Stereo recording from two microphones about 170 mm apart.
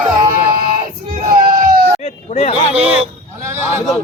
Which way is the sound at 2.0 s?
40° left (ahead or behind).